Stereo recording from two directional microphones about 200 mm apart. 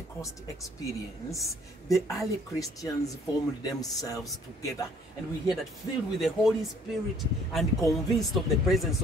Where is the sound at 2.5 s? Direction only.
15° left (ahead or behind).